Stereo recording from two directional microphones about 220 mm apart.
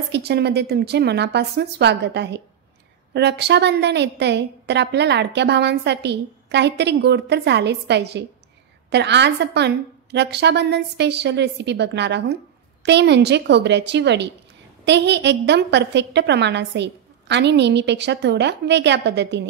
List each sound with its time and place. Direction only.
0.1 s a woman's voice: 50° right (ahead or behind)